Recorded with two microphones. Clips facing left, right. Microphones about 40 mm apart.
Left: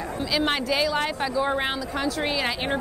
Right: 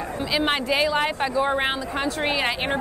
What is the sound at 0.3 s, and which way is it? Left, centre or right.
Speech, centre.